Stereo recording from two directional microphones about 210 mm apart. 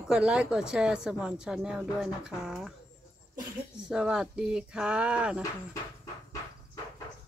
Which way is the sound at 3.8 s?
5° right (ahead or behind).